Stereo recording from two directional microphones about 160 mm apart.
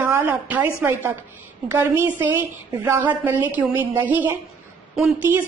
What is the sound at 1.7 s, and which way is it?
A woman's voice, 10° right (ahead or behind).